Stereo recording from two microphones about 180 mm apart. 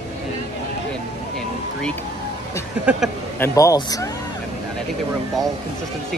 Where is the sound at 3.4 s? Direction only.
15° left (ahead or behind).